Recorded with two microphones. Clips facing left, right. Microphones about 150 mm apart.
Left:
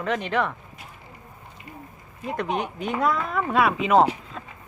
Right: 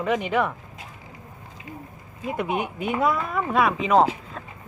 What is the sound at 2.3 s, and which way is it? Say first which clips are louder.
Speech: right 1 dB; 10° right (ahead or behind).